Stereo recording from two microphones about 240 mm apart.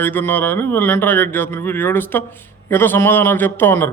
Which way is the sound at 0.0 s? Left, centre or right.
Centre.